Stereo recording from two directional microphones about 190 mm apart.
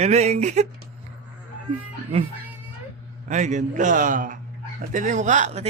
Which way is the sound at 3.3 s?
40° right (ahead or behind).